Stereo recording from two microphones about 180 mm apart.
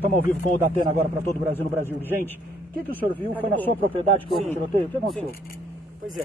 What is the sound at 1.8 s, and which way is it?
Speech, 10° left (ahead or behind).